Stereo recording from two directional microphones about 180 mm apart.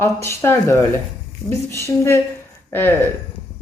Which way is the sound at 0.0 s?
15° left (ahead or behind).